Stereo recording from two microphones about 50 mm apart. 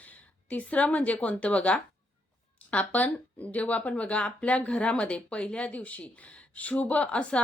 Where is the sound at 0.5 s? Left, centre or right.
Left.